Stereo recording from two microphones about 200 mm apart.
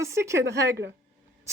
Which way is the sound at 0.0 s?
15° right (ahead or behind).